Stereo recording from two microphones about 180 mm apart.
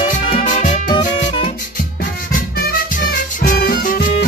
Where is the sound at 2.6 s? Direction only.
55° left (ahead or behind).